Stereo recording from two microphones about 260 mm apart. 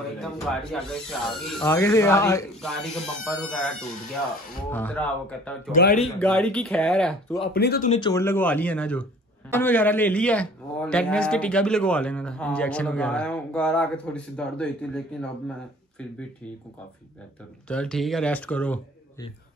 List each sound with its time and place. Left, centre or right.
0.2 s a man's voice: centre
5.7 s speech: left
5.9 s a man's voice: centre
7.5 s speech: left
7.9 s a man's voice: centre
17.6 s a man's voice: centre